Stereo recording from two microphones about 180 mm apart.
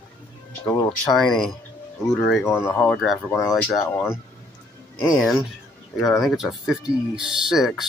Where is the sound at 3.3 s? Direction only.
20° left (ahead or behind).